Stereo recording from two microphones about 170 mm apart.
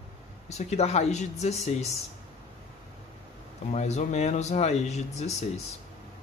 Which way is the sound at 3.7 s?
40° left (ahead or behind).